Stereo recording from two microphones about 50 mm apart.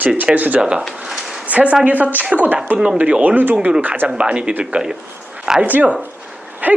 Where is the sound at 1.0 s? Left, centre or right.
Centre.